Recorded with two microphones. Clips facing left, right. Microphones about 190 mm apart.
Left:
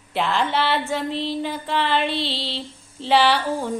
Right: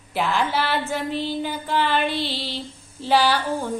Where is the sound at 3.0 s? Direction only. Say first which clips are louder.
Left 1 dB; centre (ahead or behind).